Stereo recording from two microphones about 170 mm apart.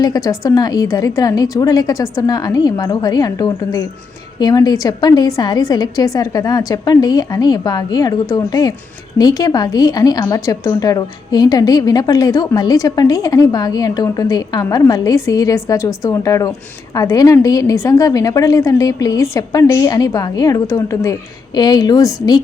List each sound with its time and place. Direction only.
0.0 s a woman's voice: 20° left (ahead or behind)